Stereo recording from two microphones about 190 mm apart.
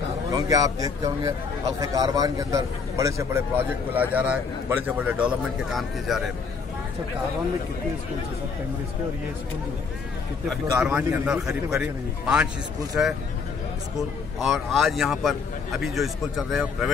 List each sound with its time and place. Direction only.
0.3 s a man's voice: 20° right (ahead or behind); by 6.2 s centre (ahead or behind)
10.8 s a man's voice: 5° right (ahead or behind)
14.4 s a man's voice: centre (ahead or behind)